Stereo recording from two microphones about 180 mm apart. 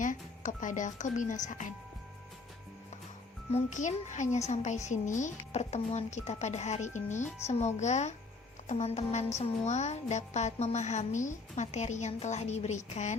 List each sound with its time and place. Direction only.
0.0 s speech: 45° left (ahead or behind)
3.5 s speech: 40° left (ahead or behind)